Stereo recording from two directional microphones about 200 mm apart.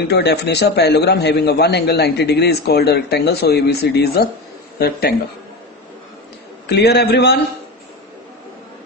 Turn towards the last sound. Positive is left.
turn(degrees=55)  # may be behind; listen again after turning